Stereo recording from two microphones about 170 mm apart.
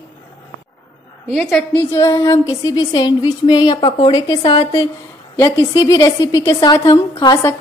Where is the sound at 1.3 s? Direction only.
5° left (ahead or behind).